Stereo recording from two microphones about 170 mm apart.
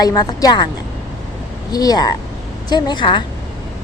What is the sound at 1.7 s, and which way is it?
Speech, 20° left (ahead or behind).